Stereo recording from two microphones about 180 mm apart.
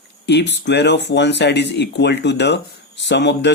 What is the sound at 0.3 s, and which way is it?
Speech, 75° left (ahead or behind).